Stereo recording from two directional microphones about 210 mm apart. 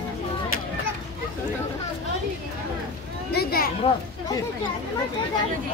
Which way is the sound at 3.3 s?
50° left (ahead or behind).